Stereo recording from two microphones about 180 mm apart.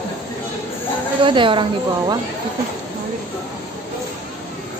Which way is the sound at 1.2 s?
25° right (ahead or behind).